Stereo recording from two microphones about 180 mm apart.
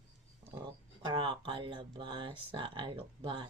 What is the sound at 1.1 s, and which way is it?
Speech, 30° right (ahead or behind).